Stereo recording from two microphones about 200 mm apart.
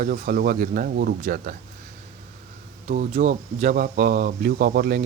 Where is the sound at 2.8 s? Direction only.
40° right (ahead or behind).